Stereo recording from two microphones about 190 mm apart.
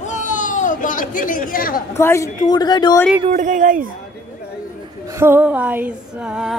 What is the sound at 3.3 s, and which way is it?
Speech, 45° right (ahead or behind).